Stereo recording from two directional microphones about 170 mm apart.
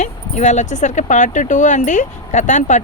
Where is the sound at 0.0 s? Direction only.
45° left (ahead or behind).